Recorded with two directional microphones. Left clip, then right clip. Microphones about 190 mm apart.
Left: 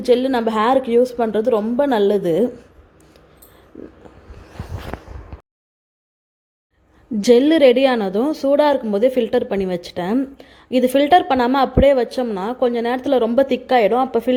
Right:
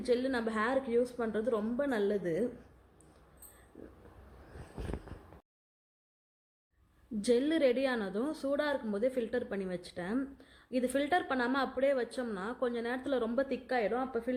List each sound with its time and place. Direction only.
0.0 s a woman's voice: 30° left (ahead or behind)
4.9 s a sound: centre (ahead or behind)
7.2 s a woman's voice: 30° left (ahead or behind)